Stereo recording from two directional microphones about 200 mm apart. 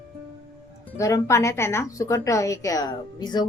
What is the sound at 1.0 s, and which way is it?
A woman's voice, 15° left (ahead or behind).